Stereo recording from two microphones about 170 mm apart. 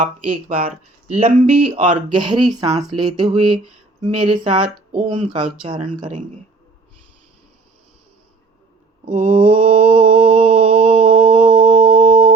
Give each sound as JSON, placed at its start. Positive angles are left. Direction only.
{"t": 0.4, "sound": "speech", "side_deg": -35}
{"t": 5.3, "sound": "speech", "side_deg": -30}
{"t": 6.1, "sound": "speech", "side_deg": -45}
{"t": 9.1, "sound": "mantra", "side_deg": -35}